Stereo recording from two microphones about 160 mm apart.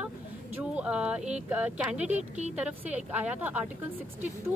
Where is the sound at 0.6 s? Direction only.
10° right (ahead or behind).